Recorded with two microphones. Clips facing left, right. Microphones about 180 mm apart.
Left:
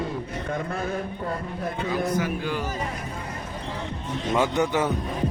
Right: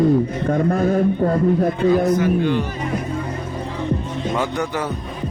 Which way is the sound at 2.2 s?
5° left (ahead or behind).